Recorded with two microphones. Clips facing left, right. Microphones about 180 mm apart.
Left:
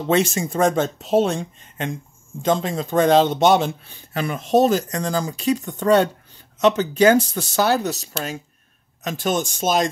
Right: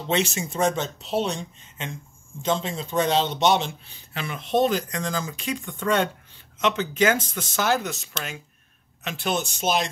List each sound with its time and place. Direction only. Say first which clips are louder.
0.1 s speech: left 6 dB; 50° left (ahead or behind)